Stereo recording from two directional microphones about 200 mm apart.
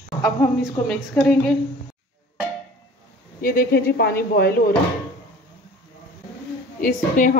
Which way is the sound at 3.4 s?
50° left (ahead or behind).